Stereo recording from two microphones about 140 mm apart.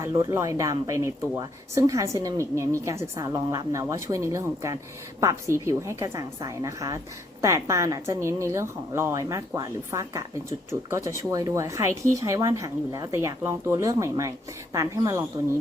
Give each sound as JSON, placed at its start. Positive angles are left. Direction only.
{"t": 0.0, "sound": "speech", "side_deg": -20}